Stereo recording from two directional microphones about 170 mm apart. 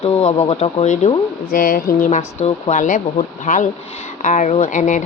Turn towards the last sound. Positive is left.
turn(degrees=50)  # may be behind; listen again after turning